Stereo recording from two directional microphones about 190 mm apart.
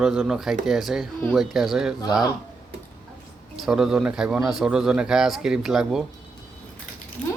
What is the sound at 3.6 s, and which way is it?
Speech, 5° right (ahead or behind).